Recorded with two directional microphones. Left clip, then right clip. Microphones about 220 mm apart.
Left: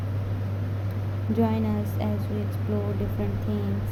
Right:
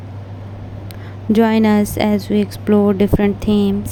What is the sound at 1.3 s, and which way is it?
Speech, 50° right (ahead or behind).